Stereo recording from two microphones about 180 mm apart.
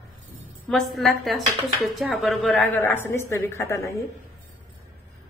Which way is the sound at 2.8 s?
10° left (ahead or behind).